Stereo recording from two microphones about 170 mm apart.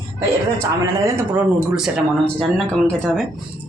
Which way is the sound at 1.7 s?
5° right (ahead or behind).